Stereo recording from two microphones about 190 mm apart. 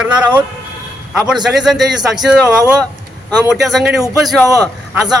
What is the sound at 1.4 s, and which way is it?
A man's voice, centre (ahead or behind).